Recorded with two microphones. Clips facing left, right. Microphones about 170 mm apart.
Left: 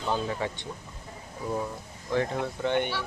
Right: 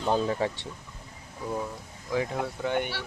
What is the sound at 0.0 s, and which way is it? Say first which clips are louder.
Speech: right 3 dB; 40° right (ahead or behind).